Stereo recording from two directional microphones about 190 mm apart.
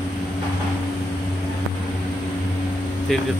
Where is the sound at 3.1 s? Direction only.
Centre (ahead or behind).